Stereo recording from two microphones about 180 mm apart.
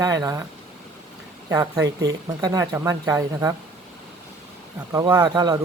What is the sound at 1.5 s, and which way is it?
Speech, 20° right (ahead or behind).